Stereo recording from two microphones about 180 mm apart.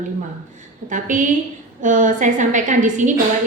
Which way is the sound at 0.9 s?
45° right (ahead or behind).